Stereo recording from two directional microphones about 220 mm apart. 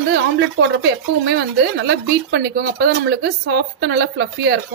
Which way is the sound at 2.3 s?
50° right (ahead or behind).